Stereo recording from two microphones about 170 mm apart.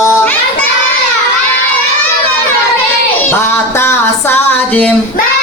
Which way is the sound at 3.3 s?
15° left (ahead or behind).